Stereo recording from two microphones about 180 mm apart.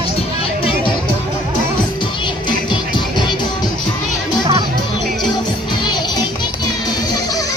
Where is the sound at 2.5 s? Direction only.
25° left (ahead or behind).